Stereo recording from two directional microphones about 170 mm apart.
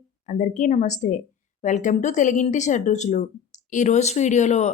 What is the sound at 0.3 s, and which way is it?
A woman's voice, 45° left (ahead or behind).